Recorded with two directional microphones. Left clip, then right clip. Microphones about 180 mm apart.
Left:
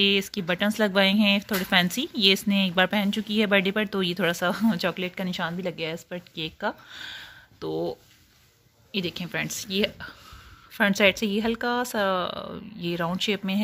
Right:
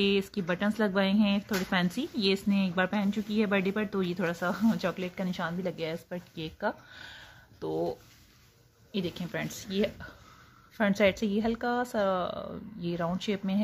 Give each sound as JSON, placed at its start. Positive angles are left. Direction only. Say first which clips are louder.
{"t": 0.0, "sound": "speech", "louder": "left 5 dB", "side_deg": 15}